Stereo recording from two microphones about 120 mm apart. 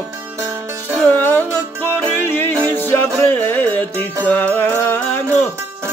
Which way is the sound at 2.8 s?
15° left (ahead or behind).